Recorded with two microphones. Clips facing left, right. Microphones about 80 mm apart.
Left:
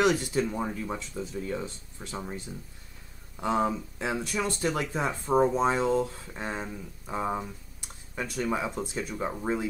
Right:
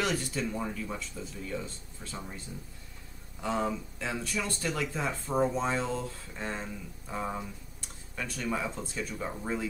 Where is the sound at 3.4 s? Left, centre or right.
Centre.